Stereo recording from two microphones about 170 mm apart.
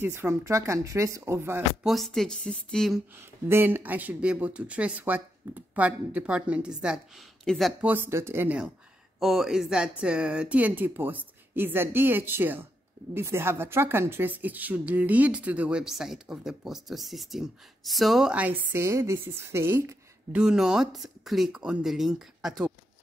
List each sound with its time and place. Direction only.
0.0 s a woman's voice: 15° right (ahead or behind)
1.9 s speech: centre (ahead or behind)
3.4 s a woman's voice: 15° right (ahead or behind)
7.9 s a woman's voice: 15° right (ahead or behind)